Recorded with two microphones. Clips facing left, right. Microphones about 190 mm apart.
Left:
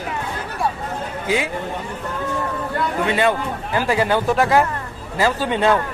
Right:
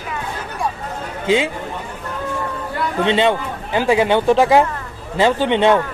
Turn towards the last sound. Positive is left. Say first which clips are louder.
# right 4 dB
turn(degrees=-20)  # may be behind; listen again after turning